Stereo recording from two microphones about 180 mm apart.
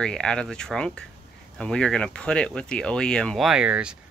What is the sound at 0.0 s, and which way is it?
Speech, 5° left (ahead or behind).